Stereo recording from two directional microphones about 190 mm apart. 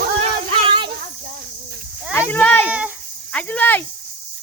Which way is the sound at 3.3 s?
10° left (ahead or behind).